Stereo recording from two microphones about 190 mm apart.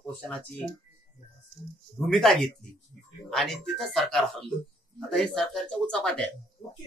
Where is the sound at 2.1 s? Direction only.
Centre (ahead or behind).